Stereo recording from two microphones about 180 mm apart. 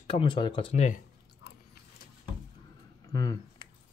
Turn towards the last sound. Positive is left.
turn(degrees=20)  # may be behind; listen again after turning